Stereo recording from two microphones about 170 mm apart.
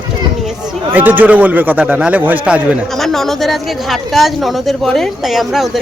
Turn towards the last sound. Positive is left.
turn(degrees=0)  # may be behind; listen again after turning